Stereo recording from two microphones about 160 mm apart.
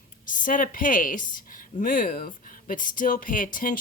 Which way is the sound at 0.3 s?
55° left (ahead or behind).